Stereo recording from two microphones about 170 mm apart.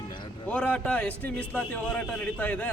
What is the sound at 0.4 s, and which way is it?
A man's voice, 10° left (ahead or behind).